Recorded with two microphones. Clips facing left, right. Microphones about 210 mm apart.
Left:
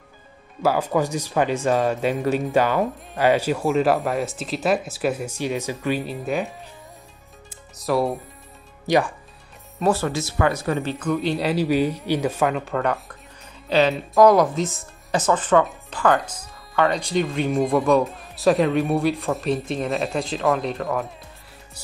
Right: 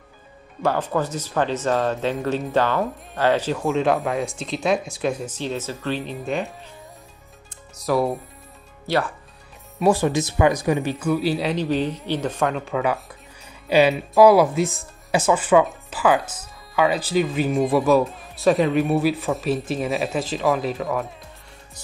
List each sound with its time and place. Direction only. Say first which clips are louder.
0.6 s speech: left 2 dB; 10° left (ahead or behind)
7.4 s music: right 1 dB; centre (ahead or behind)
8.8 s speech: left 3 dB; 15° left (ahead or behind)
9.8 s speech: right 3 dB; 15° right (ahead or behind)